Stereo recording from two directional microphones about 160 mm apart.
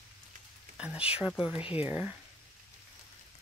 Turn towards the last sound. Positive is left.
turn(degrees=-10)  # may be behind; listen again after turning